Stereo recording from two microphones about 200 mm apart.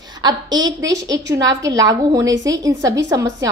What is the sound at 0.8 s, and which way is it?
A woman's voice, 15° right (ahead or behind).